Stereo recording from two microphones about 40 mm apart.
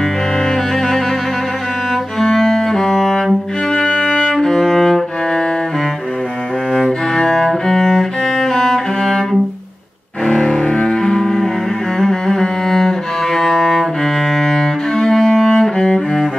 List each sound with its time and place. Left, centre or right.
0.5 s music: centre
2.3 s music: centre
6.7 s music: centre
10.2 s cello: centre